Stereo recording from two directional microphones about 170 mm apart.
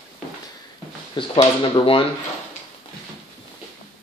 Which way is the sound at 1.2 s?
30° left (ahead or behind).